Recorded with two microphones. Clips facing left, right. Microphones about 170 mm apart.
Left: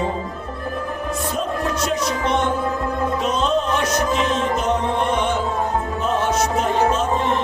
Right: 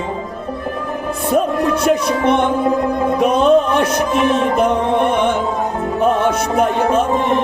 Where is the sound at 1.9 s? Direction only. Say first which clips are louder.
Right 8 dB; 60° right (ahead or behind).